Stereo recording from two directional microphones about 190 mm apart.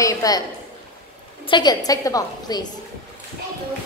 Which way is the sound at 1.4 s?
25° left (ahead or behind).